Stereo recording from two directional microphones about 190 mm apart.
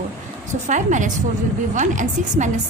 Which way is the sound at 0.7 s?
40° right (ahead or behind).